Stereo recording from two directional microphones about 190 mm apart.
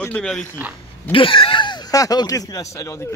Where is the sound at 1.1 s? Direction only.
25° left (ahead or behind).